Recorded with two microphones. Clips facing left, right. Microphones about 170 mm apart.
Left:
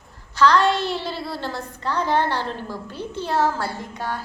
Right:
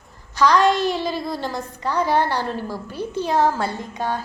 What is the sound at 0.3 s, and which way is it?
A woman's voice, 15° right (ahead or behind).